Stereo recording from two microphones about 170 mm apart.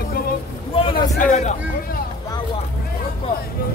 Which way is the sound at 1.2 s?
45° left (ahead or behind).